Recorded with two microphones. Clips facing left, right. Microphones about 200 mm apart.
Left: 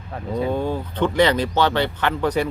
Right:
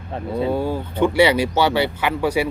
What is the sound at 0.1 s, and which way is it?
Speech, 25° right (ahead or behind).